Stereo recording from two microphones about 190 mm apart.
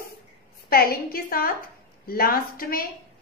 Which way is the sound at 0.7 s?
50° left (ahead or behind).